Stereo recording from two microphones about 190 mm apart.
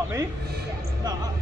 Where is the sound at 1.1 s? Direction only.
20° right (ahead or behind).